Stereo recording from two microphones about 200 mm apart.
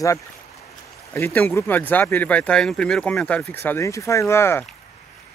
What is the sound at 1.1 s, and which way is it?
Speech, 10° left (ahead or behind).